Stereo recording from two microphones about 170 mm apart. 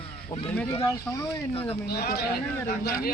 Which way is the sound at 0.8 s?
20° left (ahead or behind).